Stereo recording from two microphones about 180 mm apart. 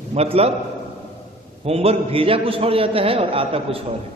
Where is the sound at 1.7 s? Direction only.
35° right (ahead or behind).